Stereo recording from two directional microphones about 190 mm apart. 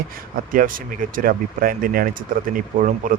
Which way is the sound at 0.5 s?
45° right (ahead or behind).